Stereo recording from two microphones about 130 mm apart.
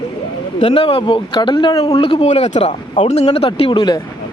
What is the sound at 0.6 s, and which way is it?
Speech, 45° left (ahead or behind).